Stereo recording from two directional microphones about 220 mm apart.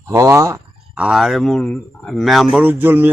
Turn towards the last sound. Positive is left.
turn(degrees=-10)  # may be behind; listen again after turning